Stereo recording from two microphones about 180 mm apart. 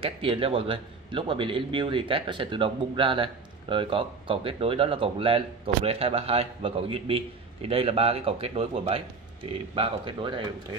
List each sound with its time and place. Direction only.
0.0 s a man's voice: 30° right (ahead or behind)